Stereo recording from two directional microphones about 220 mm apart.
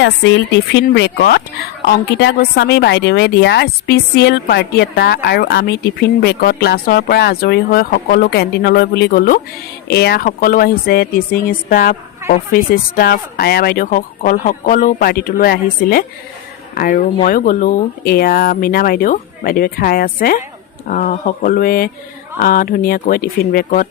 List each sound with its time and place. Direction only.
0.0 s speech: 50° left (ahead or behind)